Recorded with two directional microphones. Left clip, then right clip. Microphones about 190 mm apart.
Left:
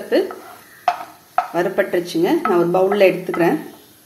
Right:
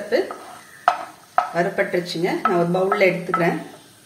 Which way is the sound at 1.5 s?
50° left (ahead or behind).